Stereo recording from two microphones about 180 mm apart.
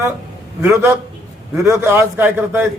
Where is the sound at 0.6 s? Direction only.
10° right (ahead or behind).